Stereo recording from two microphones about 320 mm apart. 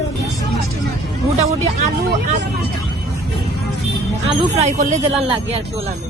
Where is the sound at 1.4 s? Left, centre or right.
Centre.